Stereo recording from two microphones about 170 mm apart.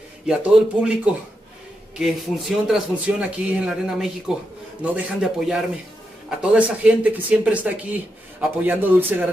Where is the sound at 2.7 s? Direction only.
5° right (ahead or behind).